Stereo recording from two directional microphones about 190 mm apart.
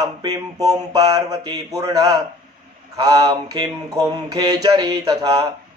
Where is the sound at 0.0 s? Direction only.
20° right (ahead or behind).